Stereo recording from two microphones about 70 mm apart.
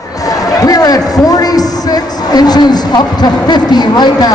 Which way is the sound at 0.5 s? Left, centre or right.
Left.